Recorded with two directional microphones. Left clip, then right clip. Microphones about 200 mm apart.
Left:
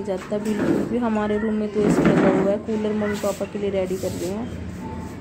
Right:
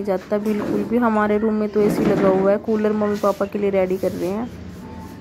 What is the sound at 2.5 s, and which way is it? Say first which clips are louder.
Speech: right 5 dB; 25° right (ahead or behind).